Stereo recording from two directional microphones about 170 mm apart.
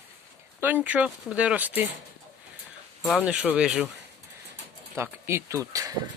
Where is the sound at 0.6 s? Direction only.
10° right (ahead or behind).